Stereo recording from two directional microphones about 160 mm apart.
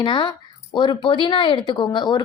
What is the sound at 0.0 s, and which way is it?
Speech, 30° left (ahead or behind).